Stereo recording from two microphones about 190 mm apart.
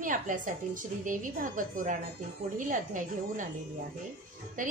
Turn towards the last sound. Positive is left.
turn(degrees=-45)  # may be behind; listen again after turning